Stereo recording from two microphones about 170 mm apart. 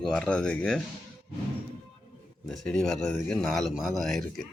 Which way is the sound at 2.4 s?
Centre (ahead or behind).